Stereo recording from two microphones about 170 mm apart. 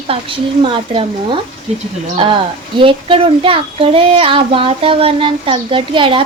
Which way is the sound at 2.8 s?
30° right (ahead or behind).